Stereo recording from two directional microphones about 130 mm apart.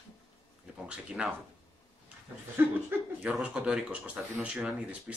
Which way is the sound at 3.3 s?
5° right (ahead or behind).